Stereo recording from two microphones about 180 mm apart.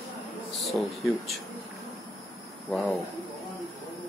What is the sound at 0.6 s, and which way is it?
Speech, centre (ahead or behind).